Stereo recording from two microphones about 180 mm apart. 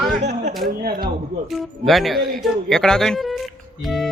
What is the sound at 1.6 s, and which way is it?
Speech, centre (ahead or behind).